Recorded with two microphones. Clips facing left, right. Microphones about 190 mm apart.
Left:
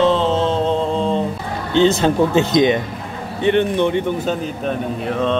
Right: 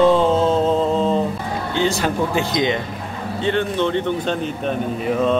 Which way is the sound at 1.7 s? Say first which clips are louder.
Left 7 dB; 20° left (ahead or behind).